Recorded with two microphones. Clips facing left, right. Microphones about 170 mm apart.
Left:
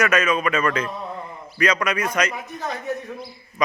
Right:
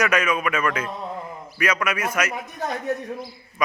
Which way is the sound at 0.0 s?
10° right (ahead or behind).